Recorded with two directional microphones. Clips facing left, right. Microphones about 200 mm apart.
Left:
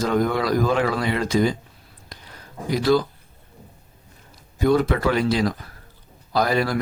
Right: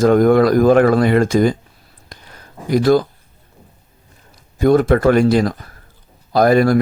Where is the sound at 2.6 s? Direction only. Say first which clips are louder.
Right 6 dB; 50° right (ahead or behind).